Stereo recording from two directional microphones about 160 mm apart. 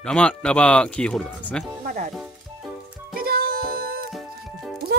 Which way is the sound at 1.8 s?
55° right (ahead or behind).